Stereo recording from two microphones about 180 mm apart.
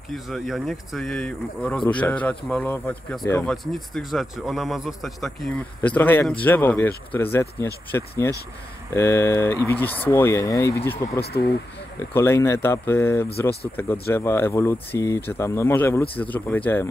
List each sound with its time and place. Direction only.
0.1 s speech: centre (ahead or behind)
11.1 s speech: 65° left (ahead or behind)
12.0 s speech: 15° left (ahead or behind)